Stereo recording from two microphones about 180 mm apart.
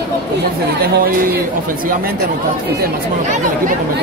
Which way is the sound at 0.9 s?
55° right (ahead or behind).